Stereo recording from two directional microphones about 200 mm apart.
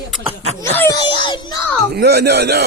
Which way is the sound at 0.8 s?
20° left (ahead or behind).